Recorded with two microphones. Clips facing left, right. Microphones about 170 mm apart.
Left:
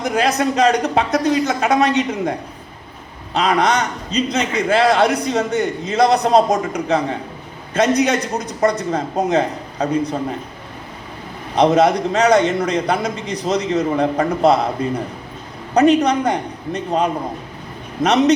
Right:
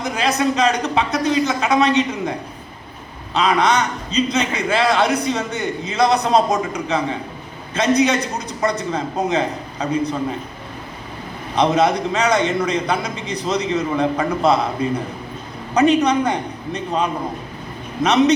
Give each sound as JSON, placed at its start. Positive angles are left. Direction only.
{"t": 0.0, "sound": "a man's voice", "side_deg": 45}
{"t": 3.3, "sound": "a man's voice", "side_deg": 45}
{"t": 11.5, "sound": "a man's voice", "side_deg": 40}